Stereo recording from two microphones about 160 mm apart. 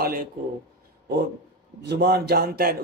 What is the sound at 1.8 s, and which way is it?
Speech, 90° right.